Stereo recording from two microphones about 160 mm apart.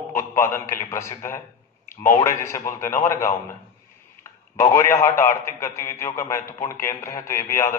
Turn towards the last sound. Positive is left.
turn(degrees=15)  # may be behind; listen again after turning